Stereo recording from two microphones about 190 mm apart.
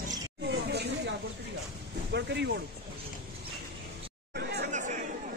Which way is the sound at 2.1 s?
65° right (ahead or behind).